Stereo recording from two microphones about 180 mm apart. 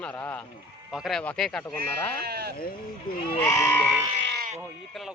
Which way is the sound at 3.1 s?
50° left (ahead or behind).